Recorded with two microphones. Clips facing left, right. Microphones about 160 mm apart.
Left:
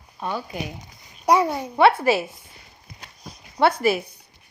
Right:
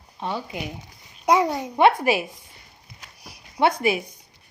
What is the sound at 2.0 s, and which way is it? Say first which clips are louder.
Speech: left 2 dB; 15° right (ahead or behind).